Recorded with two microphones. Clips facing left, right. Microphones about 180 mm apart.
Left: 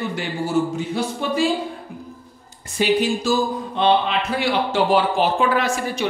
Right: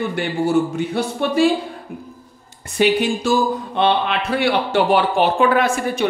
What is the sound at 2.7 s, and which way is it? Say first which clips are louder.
Speech: right 2 dB; 60° right (ahead or behind).